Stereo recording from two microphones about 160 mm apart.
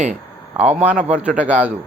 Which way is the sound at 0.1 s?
45° right (ahead or behind).